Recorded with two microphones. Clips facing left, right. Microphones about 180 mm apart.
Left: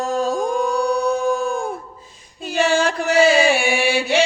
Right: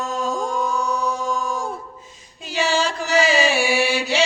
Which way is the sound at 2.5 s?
55° left (ahead or behind).